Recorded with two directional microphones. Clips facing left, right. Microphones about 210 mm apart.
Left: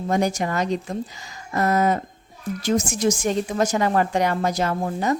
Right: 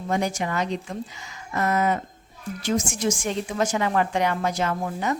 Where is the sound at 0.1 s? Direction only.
40° left (ahead or behind).